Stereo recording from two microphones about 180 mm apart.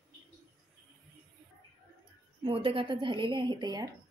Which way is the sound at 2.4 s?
30° right (ahead or behind).